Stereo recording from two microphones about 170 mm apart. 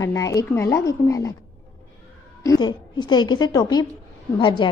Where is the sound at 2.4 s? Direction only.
25° left (ahead or behind).